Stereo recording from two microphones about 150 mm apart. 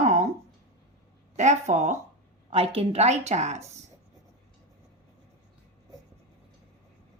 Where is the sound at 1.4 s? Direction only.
50° right (ahead or behind).